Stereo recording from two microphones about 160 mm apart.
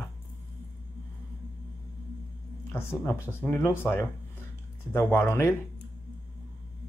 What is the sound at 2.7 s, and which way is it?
Speech, 15° left (ahead or behind).